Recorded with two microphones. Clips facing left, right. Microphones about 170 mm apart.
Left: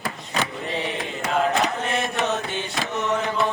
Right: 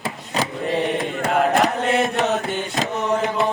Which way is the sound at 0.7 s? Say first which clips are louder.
Right 6 dB; 50° right (ahead or behind).